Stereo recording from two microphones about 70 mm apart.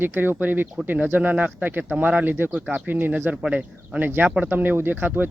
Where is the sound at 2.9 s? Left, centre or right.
Right.